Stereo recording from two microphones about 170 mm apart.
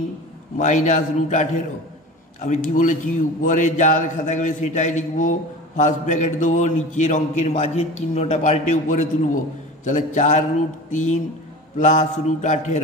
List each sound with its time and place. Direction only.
0.6 s a man's voice: 45° left (ahead or behind)